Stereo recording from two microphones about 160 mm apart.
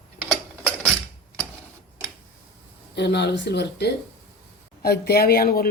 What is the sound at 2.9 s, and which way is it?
Speech, 90° left.